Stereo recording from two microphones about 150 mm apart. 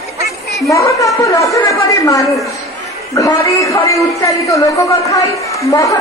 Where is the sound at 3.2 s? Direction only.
20° left (ahead or behind).